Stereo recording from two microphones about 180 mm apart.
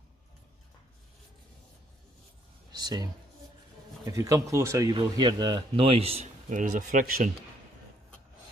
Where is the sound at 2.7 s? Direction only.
20° right (ahead or behind).